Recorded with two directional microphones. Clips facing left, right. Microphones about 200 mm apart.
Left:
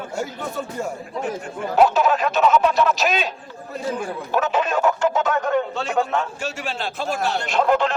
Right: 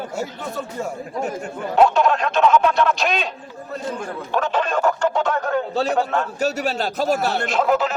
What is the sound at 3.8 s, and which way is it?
Speech, 5° left (ahead or behind).